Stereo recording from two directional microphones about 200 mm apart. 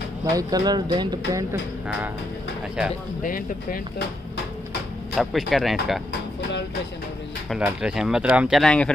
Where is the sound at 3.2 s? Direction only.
45° left (ahead or behind).